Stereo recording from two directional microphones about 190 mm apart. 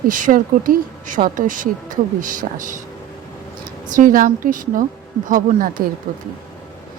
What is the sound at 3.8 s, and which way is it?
A woman's voice, 45° right (ahead or behind).